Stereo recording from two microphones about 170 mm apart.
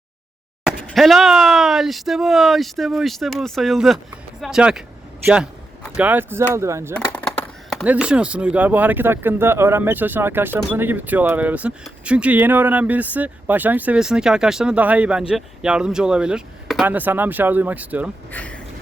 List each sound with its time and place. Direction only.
0.9 s speech: centre (ahead or behind); by 6.9 s 15° right (ahead or behind)
6.9 s a sound: 10° left (ahead or behind)
7.9 s speech: 5° right (ahead or behind)
18.3 s speech: 10° left (ahead or behind)